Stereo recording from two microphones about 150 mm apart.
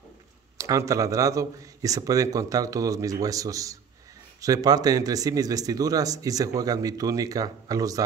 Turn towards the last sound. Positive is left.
turn(degrees=-25)  # may be behind; listen again after turning